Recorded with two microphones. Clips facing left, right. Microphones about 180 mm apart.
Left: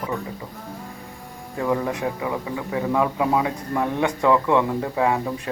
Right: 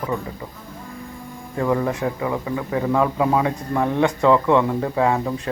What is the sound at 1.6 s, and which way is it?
A man's voice, 15° left (ahead or behind).